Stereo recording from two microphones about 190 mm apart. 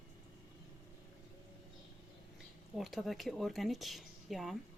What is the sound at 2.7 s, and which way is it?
Speech, centre (ahead or behind).